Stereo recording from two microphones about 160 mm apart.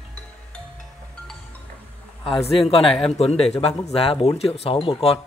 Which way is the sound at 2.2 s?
35° left (ahead or behind).